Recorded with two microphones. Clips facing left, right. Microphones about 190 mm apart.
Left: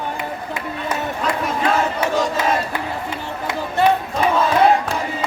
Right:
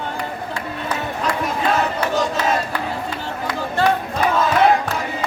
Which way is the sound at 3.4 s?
25° left (ahead or behind).